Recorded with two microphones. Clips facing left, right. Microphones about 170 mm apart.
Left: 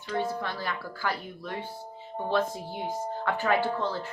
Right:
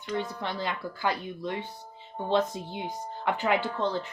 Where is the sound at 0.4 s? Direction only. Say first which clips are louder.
Right 2 dB; 20° right (ahead or behind).